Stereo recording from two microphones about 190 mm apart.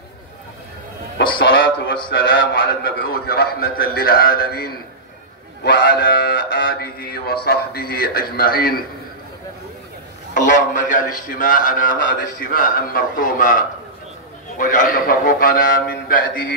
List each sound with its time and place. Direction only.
1.1 s music: 60° left (ahead or behind)
2.8 s a man's voice: 55° left (ahead or behind)
5.6 s speech: 65° left (ahead or behind); by 8.8 s 50° left (ahead or behind)
10.3 s a man's voice: 40° left (ahead or behind)